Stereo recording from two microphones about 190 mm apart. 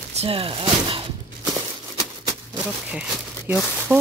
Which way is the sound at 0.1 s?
30° right (ahead or behind).